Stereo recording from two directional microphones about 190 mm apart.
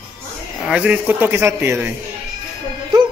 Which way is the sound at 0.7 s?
5° right (ahead or behind).